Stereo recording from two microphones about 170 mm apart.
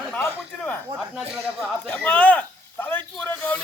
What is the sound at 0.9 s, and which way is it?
Speech, 5° right (ahead or behind).